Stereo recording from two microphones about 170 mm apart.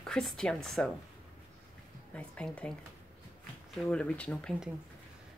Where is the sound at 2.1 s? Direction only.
5° left (ahead or behind).